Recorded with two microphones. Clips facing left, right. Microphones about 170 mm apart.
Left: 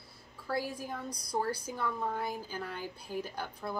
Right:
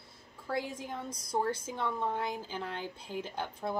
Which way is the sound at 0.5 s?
20° right (ahead or behind).